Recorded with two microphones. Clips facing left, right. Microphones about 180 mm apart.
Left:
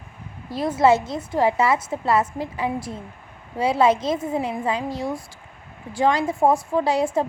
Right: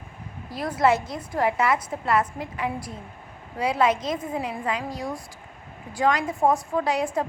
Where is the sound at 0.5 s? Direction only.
25° left (ahead or behind).